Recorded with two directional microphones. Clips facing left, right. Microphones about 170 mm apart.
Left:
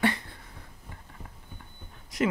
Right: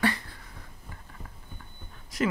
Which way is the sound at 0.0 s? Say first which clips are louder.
Left 1 dB; 25° left (ahead or behind).